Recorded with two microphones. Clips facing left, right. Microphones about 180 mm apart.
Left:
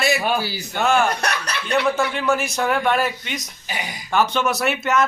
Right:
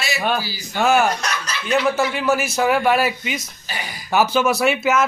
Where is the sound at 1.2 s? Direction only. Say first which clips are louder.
Left 2 dB; 60° left (ahead or behind).